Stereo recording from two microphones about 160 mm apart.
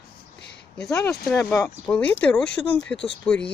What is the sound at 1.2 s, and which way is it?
Speech, 15° left (ahead or behind).